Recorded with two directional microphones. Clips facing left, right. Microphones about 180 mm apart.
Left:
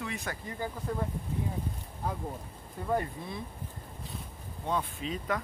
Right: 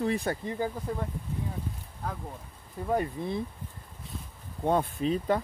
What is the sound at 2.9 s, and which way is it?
Speech, 25° right (ahead or behind).